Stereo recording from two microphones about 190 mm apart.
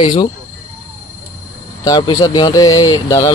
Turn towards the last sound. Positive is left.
turn(degrees=20)  # may be behind; listen again after turning